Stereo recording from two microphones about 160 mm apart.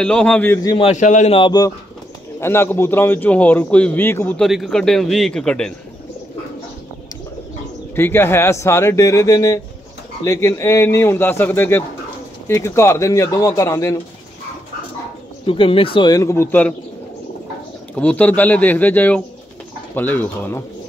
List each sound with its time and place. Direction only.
0.0 s a man's voice: 5° left (ahead or behind)
0.6 s speech: 25° left (ahead or behind)
0.8 s a man's voice: 50° left (ahead or behind)
1.3 s speech: 25° left (ahead or behind)
2.4 s a man's voice: 15° left (ahead or behind)
4.4 s a man's voice: centre (ahead or behind)
7.9 s a man's voice: 15° left (ahead or behind)
15.4 s speech: 35° left (ahead or behind); by 16.7 s 15° left (ahead or behind)
17.9 s a man's voice: 10° left (ahead or behind)